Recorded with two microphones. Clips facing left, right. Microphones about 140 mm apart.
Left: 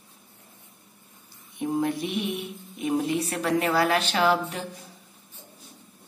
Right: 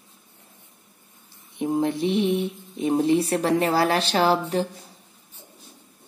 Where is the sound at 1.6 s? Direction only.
25° right (ahead or behind).